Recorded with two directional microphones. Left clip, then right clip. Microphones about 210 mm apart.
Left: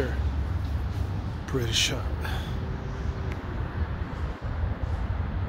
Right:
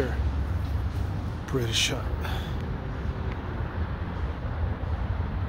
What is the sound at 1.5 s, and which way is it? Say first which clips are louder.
Speech: even; centre (ahead or behind).